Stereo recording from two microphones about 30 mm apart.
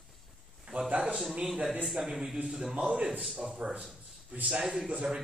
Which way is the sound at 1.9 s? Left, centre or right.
Centre.